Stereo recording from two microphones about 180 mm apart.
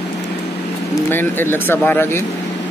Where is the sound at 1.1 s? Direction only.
10° left (ahead or behind).